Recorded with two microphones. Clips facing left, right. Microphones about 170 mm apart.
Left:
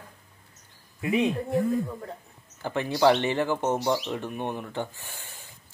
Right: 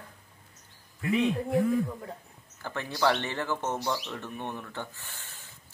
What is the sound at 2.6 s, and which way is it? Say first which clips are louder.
Speech: left 6 dB; 20° left (ahead or behind).